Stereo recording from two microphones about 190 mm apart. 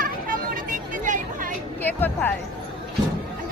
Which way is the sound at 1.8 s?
10° left (ahead or behind).